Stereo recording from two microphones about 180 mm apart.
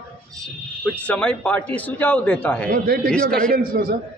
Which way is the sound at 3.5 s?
55° right (ahead or behind).